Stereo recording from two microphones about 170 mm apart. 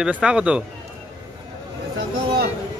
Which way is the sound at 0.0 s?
5° right (ahead or behind).